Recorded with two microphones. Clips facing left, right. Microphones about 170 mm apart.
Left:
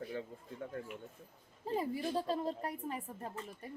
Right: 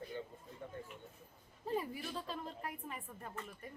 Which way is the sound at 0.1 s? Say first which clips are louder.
Left 2 dB; 90° left.